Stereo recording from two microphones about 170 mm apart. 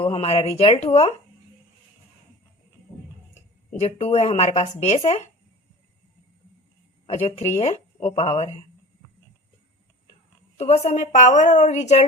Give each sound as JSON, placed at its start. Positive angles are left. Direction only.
{"t": 0.0, "sound": "speech", "side_deg": 35}
{"t": 3.7, "sound": "speech", "side_deg": 40}
{"t": 7.1, "sound": "speech", "side_deg": 35}
{"t": 10.6, "sound": "a woman's voice", "side_deg": 40}